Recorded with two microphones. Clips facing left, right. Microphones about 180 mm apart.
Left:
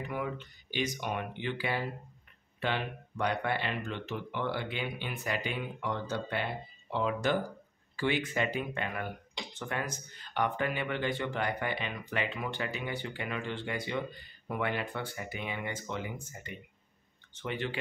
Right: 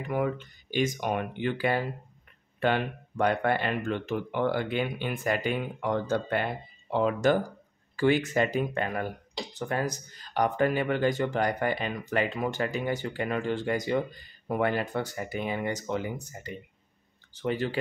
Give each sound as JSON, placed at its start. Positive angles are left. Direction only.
{"t": 0.1, "sound": "speech", "side_deg": -45}
{"t": 7.9, "sound": "a sound", "side_deg": -45}
{"t": 8.3, "sound": "speech", "side_deg": -40}